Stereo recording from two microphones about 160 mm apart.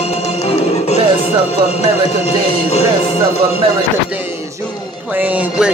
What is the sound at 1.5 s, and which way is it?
Speech, 40° left (ahead or behind).